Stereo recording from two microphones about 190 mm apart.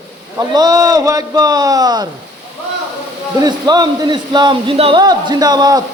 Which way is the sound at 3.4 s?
20° right (ahead or behind).